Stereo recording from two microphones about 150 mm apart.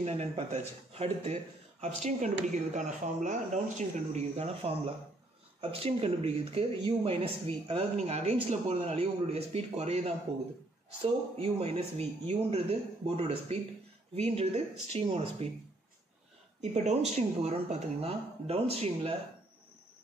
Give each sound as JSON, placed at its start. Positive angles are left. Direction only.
{"t": 0.0, "sound": "speech", "side_deg": -45}
{"t": 16.7, "sound": "speech", "side_deg": -50}